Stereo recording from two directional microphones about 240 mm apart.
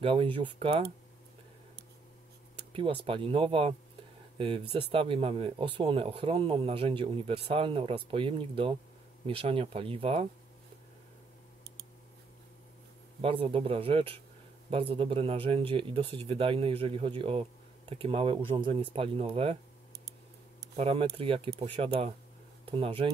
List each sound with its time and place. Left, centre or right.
0.0 s speech: right
2.7 s speech: right
13.2 s speech: right
20.7 s speech: right